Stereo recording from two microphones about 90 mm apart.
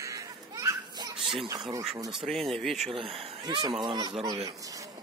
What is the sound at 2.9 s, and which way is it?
Speech, 90° right.